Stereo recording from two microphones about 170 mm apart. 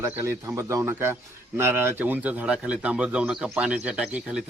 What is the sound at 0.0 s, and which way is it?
A man's voice, 15° right (ahead or behind).